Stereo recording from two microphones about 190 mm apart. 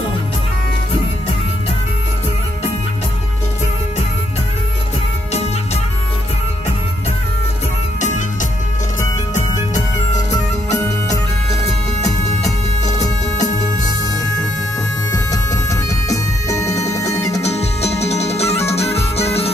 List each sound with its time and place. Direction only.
8.0 s music: 40° left (ahead or behind)
11.6 s music: 35° left (ahead or behind)
15.0 s music: 20° left (ahead or behind)
17.4 s music: 35° left (ahead or behind)